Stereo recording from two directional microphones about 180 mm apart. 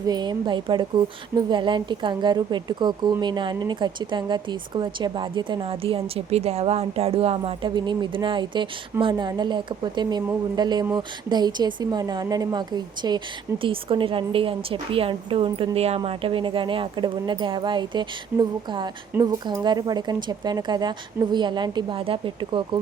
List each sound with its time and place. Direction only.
0.1 s speech: 25° right (ahead or behind)